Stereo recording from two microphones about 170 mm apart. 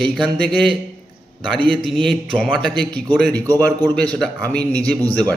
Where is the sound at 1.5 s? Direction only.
30° right (ahead or behind).